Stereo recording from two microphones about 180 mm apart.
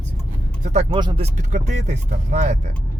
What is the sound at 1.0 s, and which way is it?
Speech, 25° right (ahead or behind).